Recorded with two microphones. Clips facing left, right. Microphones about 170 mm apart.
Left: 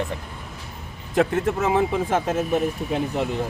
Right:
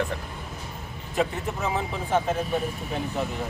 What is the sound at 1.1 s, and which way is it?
Speech, 90° left.